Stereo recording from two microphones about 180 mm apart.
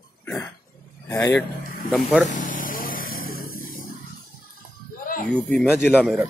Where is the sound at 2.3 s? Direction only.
45° left (ahead or behind).